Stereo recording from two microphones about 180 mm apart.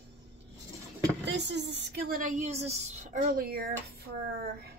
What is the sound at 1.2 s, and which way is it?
A woman's voice, 70° right (ahead or behind).